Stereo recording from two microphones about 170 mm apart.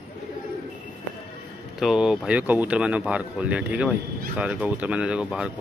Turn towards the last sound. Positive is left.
turn(degrees=-5)  # may be behind; listen again after turning